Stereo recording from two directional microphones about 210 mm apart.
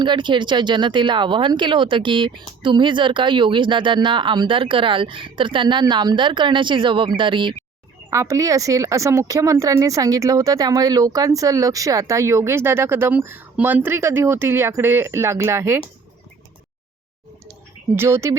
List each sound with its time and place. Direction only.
0.0 s speech: 20° right (ahead or behind)
17.9 s speech: 10° right (ahead or behind)